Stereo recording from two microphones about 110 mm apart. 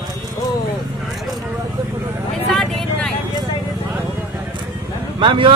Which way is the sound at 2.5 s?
5° left (ahead or behind).